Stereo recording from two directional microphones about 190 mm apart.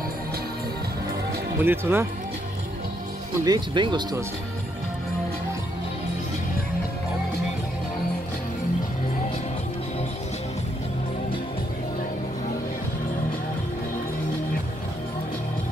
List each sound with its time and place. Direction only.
1.6 s speech: 10° right (ahead or behind)
3.3 s speech: 20° right (ahead or behind)